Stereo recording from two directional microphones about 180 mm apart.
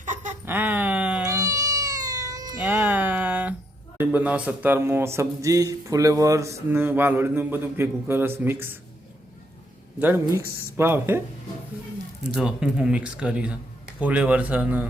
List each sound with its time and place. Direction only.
0.0 s a sound: 45° right (ahead or behind)
0.4 s cat: 10° right (ahead or behind)
2.6 s music: 10° right (ahead or behind)
3.9 s speech: 10° right (ahead or behind)
10.0 s speech: 10° right (ahead or behind)
12.3 s speech: 5° right (ahead or behind)